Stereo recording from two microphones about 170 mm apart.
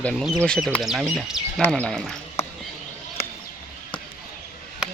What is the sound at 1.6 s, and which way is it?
Speech, 5° left (ahead or behind).